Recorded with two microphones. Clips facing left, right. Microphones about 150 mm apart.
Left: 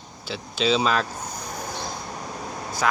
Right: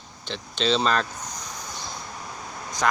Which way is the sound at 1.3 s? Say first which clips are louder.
Left 5 dB; 60° left (ahead or behind).